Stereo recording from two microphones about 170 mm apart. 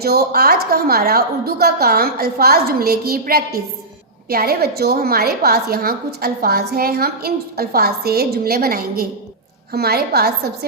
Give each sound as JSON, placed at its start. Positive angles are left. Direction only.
{"t": 0.0, "sound": "a woman's voice", "side_deg": -65}